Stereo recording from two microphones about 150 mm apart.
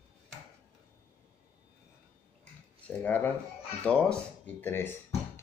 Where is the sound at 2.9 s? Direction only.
10° left (ahead or behind).